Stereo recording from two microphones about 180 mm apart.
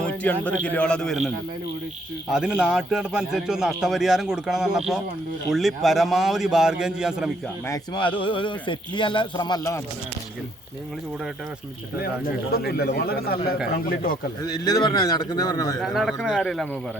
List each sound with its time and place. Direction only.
0.0 s a sound: 10° left (ahead or behind)
0.6 s a man's voice: 5° left (ahead or behind)
2.3 s a man's voice: 5° right (ahead or behind)
7.7 s a man's voice: 25° left (ahead or behind)
12.2 s speech: 55° left (ahead or behind)
14.4 s a man's voice: 20° left (ahead or behind)
15.8 s a man's voice: centre (ahead or behind)